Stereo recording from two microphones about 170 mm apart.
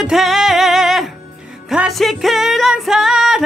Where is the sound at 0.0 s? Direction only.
Centre (ahead or behind).